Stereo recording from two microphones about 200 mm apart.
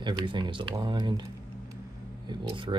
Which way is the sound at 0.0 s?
25° right (ahead or behind).